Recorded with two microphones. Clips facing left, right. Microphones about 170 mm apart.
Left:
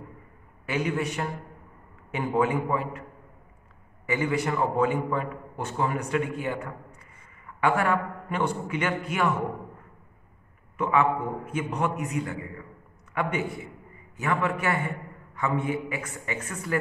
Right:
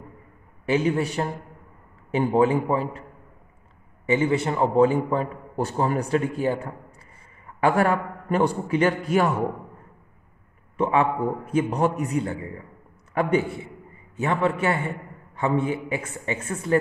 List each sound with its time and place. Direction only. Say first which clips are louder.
0.7 s a man's voice: right 5 dB; 30° right (ahead or behind)
10.8 s a man's voice: right 2 dB; 30° right (ahead or behind)